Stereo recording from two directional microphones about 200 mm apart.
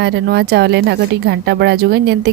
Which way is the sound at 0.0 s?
55° right (ahead or behind).